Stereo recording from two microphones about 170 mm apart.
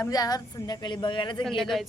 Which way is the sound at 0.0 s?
20° left (ahead or behind).